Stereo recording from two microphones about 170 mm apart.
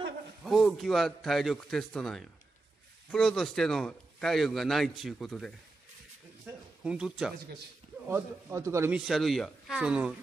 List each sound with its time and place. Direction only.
0.4 s a man's voice: centre (ahead or behind)
6.8 s a man's voice: 5° right (ahead or behind)
8.1 s speech: 15° right (ahead or behind)
9.0 s a man's voice: centre (ahead or behind)